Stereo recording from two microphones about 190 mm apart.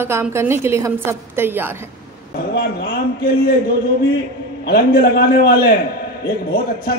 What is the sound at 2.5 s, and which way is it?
A man's voice, 55° left (ahead or behind).